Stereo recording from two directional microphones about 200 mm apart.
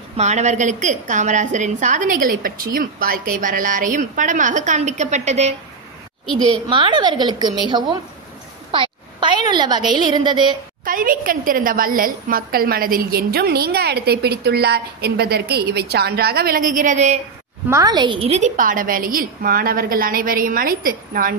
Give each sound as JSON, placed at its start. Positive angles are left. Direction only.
{"t": 0.2, "sound": "a woman's voice", "side_deg": -35}
{"t": 6.5, "sound": "a woman's voice", "side_deg": -25}
{"t": 10.9, "sound": "a woman's voice", "side_deg": -45}
{"t": 17.6, "sound": "a woman's voice", "side_deg": -15}